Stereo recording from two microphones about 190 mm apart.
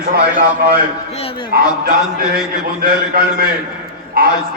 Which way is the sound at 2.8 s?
50° right (ahead or behind).